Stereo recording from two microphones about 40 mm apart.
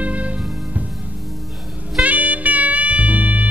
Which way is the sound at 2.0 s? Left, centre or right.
Right.